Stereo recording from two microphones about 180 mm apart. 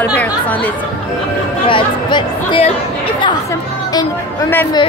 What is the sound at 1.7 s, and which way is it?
Speech, 30° left (ahead or behind).